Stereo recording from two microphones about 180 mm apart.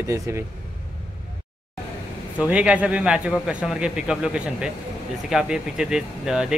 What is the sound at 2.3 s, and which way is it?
A man's voice, 5° right (ahead or behind).